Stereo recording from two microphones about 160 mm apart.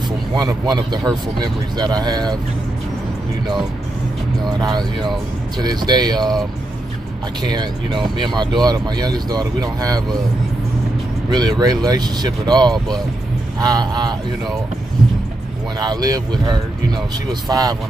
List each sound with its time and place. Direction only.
0.4 s speech: 25° right (ahead or behind)
4.6 s speech: 25° right (ahead or behind)
7.4 s speech: 25° right (ahead or behind)
11.2 s speech: 25° right (ahead or behind)
15.8 s speech: 25° right (ahead or behind)